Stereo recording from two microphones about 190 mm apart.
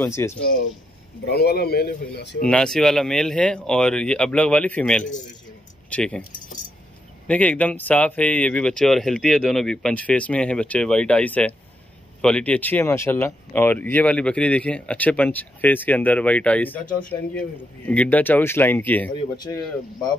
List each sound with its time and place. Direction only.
0.0 s speech: 15° left (ahead or behind)
1.2 s speech: 55° left (ahead or behind)
2.4 s speech: 5° left (ahead or behind)
7.2 s speech: 10° left (ahead or behind)